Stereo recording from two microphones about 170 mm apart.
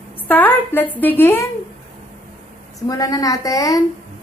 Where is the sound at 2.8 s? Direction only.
20° left (ahead or behind).